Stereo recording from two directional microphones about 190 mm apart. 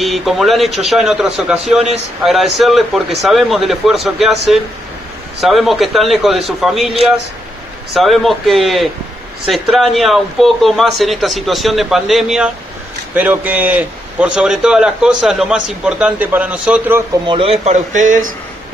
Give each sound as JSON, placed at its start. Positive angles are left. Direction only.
{"t": 0.0, "sound": "a man's voice", "side_deg": 0}
{"t": 17.3, "sound": "speech", "side_deg": -30}